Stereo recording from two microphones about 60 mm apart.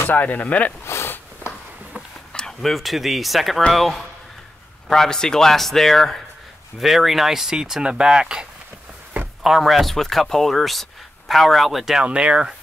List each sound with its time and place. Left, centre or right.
0.0 s speech: left
0.8 s a sound: left
2.3 s speech: centre
9.4 s speech: centre
12.0 s speech: centre